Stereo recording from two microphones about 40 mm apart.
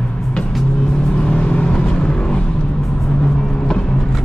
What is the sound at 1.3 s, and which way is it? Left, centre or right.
Vehicle, left.